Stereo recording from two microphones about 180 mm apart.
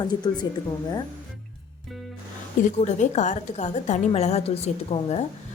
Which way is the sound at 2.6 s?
40° left (ahead or behind).